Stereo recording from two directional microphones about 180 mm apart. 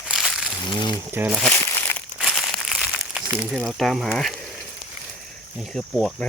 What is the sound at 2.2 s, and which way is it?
Crumpling, centre (ahead or behind).